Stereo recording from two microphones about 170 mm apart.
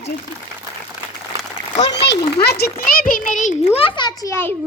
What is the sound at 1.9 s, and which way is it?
A child's voice, 85° left.